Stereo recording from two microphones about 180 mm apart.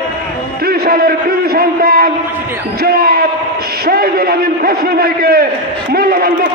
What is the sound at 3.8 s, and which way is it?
A man's voice, 55° right (ahead or behind).